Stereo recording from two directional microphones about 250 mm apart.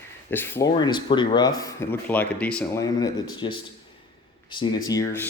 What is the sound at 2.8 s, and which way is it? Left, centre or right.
Speech, centre.